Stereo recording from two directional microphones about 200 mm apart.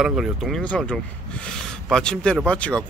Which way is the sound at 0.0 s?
Centre (ahead or behind).